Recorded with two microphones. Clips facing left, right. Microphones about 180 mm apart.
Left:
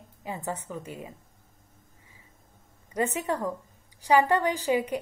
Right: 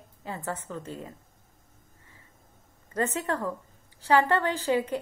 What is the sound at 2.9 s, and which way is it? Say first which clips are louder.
A woman's voice: left 1 dB; 15° left (ahead or behind).